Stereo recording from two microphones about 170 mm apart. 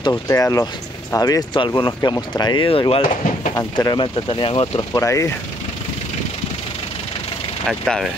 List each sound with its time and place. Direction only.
0.1 s speech: 20° left (ahead or behind)
4.9 s speech: 15° left (ahead or behind)
7.6 s speech: centre (ahead or behind)